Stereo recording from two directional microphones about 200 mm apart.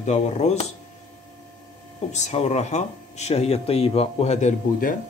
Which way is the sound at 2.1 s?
35° left (ahead or behind).